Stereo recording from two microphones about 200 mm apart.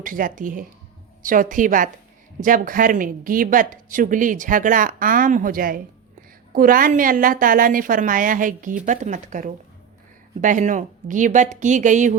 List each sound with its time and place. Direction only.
0.0 s a woman's voice: 45° right (ahead or behind)